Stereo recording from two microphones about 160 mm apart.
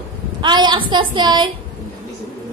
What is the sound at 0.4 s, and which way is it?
A woman's voice, 30° right (ahead or behind).